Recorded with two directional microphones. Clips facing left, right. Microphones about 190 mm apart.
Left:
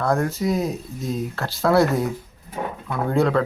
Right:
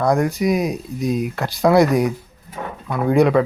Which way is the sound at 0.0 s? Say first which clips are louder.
Right 4 dB; 15° right (ahead or behind).